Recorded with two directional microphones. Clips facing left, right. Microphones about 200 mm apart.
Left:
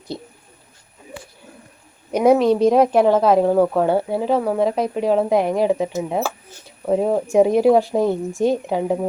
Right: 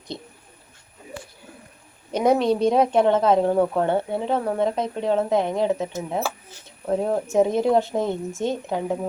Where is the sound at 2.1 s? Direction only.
10° left (ahead or behind).